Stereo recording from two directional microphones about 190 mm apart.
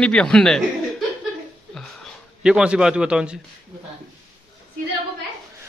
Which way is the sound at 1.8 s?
Centre (ahead or behind).